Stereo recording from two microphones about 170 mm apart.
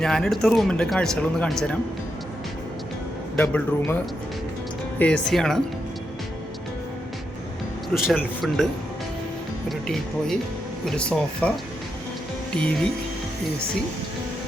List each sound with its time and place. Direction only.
0.0 s speech: 5° left (ahead or behind)
3.3 s speech: 10° left (ahead or behind)
8.1 s speech: 5° left (ahead or behind)
9.6 s speech: centre (ahead or behind)
12.5 s speech: 5° left (ahead or behind)